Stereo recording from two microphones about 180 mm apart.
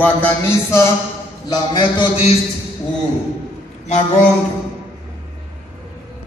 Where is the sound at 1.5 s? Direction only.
25° left (ahead or behind).